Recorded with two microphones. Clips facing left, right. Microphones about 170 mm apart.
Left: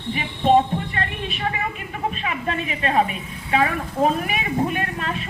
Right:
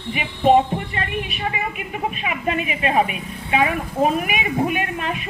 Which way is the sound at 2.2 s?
15° right (ahead or behind).